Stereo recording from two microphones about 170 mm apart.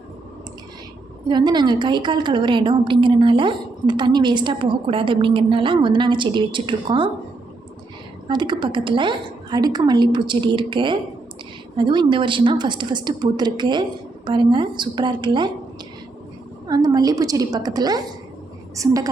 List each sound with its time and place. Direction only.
1.3 s a woman's voice: 25° right (ahead or behind)
8.3 s a woman's voice: 25° right (ahead or behind)
16.6 s a woman's voice: 25° right (ahead or behind)